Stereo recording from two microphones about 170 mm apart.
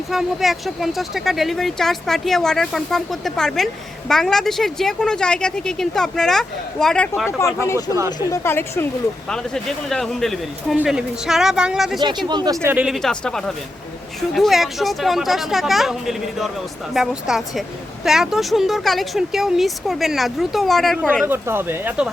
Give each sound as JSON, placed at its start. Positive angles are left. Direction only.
{"t": 0.1, "sound": "a woman's voice", "side_deg": 0}
{"t": 9.3, "sound": "speech", "side_deg": 5}
{"t": 11.9, "sound": "speech", "side_deg": -25}
{"t": 12.6, "sound": "speech", "side_deg": -5}
{"t": 21.2, "sound": "speech", "side_deg": -15}